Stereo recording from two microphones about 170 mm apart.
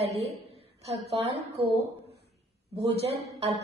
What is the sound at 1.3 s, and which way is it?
Speech, 75° right (ahead or behind).